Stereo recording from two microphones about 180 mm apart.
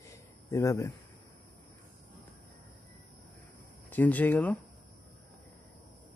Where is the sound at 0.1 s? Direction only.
15° left (ahead or behind).